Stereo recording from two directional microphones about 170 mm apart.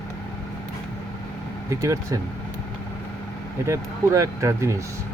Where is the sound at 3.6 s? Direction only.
20° right (ahead or behind).